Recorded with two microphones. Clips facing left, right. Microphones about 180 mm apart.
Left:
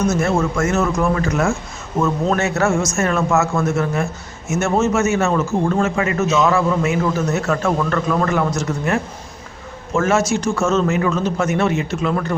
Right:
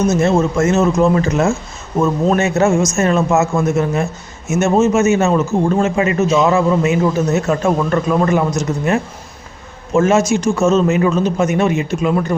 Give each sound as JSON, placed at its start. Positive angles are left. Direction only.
{"t": 0.0, "sound": "a man's voice", "side_deg": -20}